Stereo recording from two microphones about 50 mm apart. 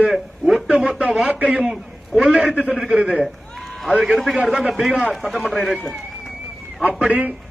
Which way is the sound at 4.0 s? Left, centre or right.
Centre.